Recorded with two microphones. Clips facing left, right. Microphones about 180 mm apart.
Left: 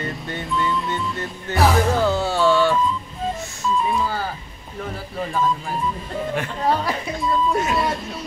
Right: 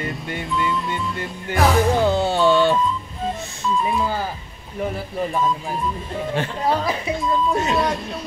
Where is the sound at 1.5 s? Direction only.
20° right (ahead or behind).